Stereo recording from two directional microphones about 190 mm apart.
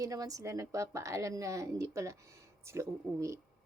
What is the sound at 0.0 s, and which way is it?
Speech, 20° right (ahead or behind).